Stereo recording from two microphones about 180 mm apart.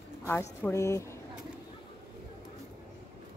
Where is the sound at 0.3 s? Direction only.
10° left (ahead or behind).